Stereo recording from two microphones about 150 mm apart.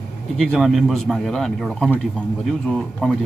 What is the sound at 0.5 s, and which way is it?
Speech, centre (ahead or behind).